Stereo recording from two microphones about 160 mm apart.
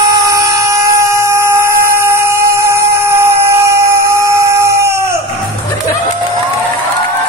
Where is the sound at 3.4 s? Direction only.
20° right (ahead or behind).